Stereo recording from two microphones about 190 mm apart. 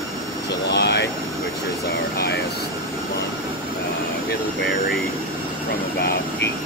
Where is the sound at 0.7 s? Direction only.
65° left (ahead or behind).